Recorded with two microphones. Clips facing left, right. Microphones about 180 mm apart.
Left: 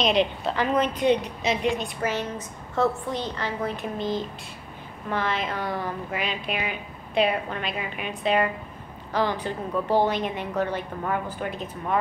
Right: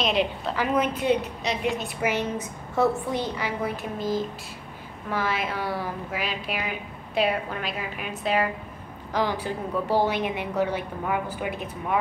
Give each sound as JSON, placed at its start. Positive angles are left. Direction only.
{"t": 0.0, "sound": "a woman's voice", "side_deg": -5}